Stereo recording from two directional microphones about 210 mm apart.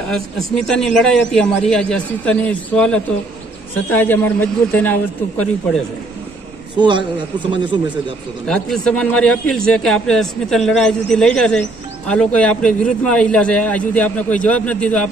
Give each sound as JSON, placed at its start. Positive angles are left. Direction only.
{"t": 0.1, "sound": "a man's voice", "side_deg": 0}
{"t": 7.5, "sound": "speech", "side_deg": -20}
{"t": 8.5, "sound": "a man's voice", "side_deg": 5}